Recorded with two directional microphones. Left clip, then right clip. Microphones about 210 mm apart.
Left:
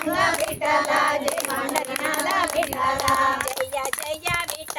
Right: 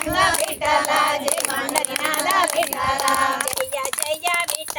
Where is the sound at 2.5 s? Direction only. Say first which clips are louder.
Right 2 dB; 25° right (ahead or behind).